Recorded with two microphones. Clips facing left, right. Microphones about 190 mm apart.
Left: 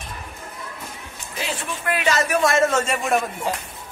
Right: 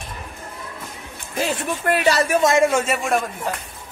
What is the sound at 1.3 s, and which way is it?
Speech, 45° right (ahead or behind).